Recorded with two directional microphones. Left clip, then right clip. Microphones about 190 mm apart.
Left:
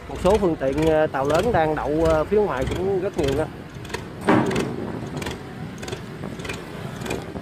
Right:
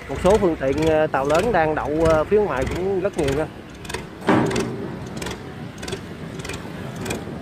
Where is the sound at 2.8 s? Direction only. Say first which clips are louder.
Right 1 dB; 20° right (ahead or behind).